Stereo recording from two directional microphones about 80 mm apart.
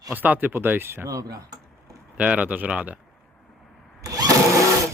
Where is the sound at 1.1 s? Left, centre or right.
Right.